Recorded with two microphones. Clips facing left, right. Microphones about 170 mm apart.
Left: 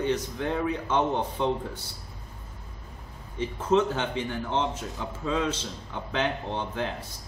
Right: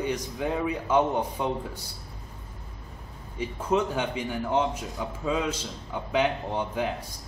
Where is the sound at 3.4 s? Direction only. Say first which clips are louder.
Left 2 dB; 10° right (ahead or behind).